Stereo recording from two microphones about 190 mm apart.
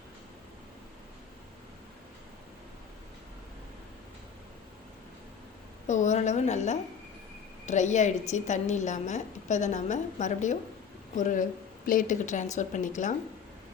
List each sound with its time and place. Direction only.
5.9 s a woman's voice: 40° left (ahead or behind)